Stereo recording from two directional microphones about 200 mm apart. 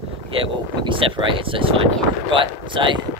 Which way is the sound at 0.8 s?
25° right (ahead or behind).